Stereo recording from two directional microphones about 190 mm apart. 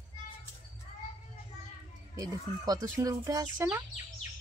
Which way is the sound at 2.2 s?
20° right (ahead or behind).